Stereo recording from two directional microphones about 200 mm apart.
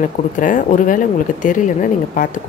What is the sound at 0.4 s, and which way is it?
Speech, 40° left (ahead or behind).